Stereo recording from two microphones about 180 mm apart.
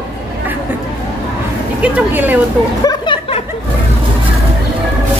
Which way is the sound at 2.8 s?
25° left (ahead or behind).